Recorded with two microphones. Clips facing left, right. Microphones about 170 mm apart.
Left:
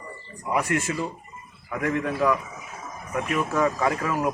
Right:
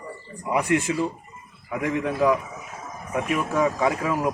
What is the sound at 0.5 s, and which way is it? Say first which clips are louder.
Speech: right 3 dB; 15° right (ahead or behind).